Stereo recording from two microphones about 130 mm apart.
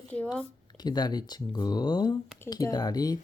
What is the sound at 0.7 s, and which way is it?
Speech, 30° left (ahead or behind).